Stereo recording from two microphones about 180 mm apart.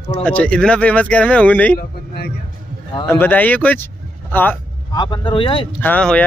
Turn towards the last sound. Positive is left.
turn(degrees=5)  # may be behind; listen again after turning